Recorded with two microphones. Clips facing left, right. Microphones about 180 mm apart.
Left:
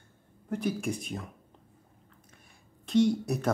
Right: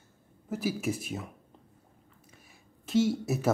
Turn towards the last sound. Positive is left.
turn(degrees=-5)  # may be behind; listen again after turning